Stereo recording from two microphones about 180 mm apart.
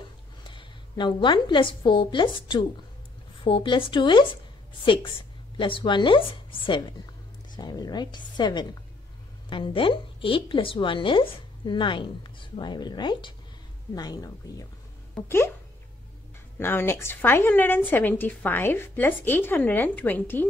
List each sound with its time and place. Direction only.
0.4 s a woman's voice: 25° left (ahead or behind)
5.6 s a woman's voice: 25° left (ahead or behind)
16.5 s a woman's voice: 15° left (ahead or behind)